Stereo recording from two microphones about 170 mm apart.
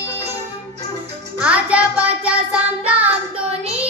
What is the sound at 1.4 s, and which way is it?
Music, 5° right (ahead or behind).